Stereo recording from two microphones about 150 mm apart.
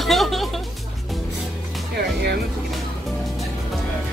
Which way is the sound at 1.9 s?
90° right.